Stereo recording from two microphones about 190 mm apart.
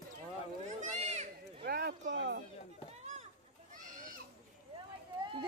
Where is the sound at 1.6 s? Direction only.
60° right (ahead or behind).